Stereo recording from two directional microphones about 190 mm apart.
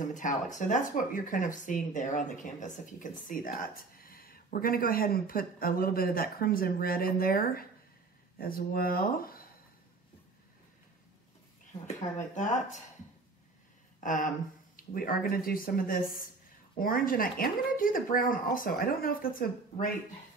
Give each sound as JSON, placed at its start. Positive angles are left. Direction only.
{"t": 0.0, "sound": "speech", "side_deg": 40}
{"t": 11.9, "sound": "speech", "side_deg": 40}
{"t": 14.0, "sound": "speech", "side_deg": 45}